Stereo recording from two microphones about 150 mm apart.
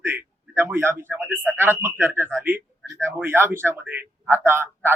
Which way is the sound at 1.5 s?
15° right (ahead or behind).